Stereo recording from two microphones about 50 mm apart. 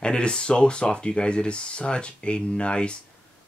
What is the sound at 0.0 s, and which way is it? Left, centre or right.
Speech, centre.